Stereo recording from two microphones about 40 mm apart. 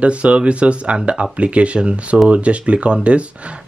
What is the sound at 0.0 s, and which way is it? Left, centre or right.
Speech, right.